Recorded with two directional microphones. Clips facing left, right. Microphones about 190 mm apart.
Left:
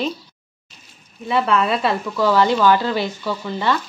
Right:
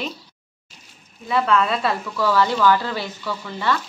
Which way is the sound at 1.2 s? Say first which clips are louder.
Left 1 dB; 25° left (ahead or behind).